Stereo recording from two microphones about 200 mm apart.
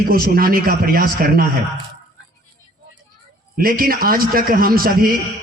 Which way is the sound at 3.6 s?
45° right (ahead or behind).